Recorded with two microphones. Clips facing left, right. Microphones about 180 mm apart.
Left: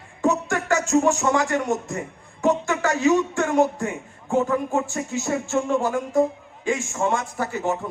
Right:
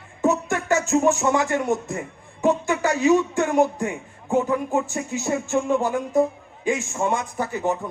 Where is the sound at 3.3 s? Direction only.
20° right (ahead or behind).